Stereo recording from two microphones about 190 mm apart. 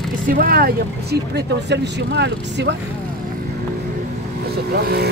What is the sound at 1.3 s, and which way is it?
Speech, 65° right (ahead or behind).